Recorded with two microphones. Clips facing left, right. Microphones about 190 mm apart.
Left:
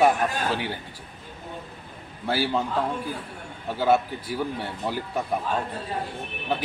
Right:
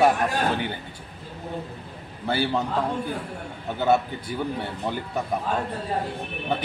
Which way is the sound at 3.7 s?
5° left (ahead or behind).